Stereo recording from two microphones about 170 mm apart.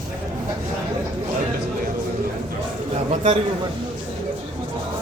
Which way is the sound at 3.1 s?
40° right (ahead or behind).